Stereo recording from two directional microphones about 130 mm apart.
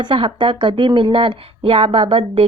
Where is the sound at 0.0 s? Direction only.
40° right (ahead or behind).